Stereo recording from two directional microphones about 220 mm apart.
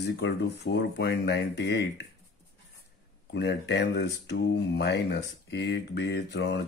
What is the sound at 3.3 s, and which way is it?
Speech, 50° left (ahead or behind).